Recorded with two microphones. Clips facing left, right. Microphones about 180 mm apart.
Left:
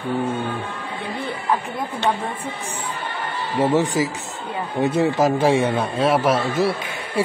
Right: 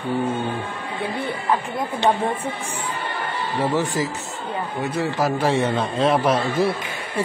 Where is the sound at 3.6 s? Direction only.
20° left (ahead or behind); by 7.2 s centre (ahead or behind).